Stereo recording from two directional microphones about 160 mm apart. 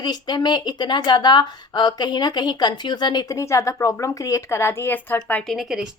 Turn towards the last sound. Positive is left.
turn(degrees=0)  # may be behind; listen again after turning